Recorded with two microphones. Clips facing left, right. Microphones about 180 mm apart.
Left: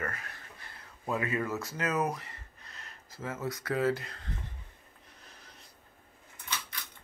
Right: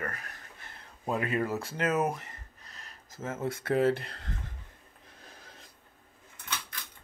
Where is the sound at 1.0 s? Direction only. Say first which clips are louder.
Right 2 dB; 30° right (ahead or behind).